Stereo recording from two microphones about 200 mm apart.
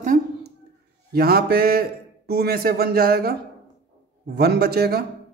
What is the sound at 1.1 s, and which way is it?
A man's voice, 50° right (ahead or behind).